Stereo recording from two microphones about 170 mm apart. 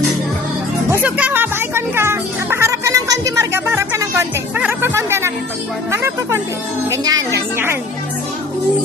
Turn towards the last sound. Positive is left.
turn(degrees=-15)  # may be behind; listen again after turning